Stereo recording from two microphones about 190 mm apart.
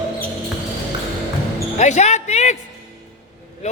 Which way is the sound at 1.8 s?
40° left (ahead or behind).